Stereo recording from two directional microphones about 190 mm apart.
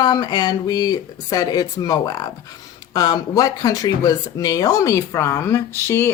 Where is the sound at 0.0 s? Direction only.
20° left (ahead or behind).